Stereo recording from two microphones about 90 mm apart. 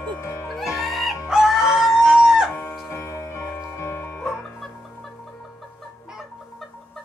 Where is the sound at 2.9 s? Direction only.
30° left (ahead or behind).